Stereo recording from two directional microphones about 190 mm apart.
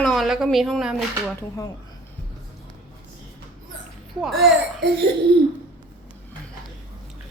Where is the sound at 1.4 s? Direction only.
15° left (ahead or behind).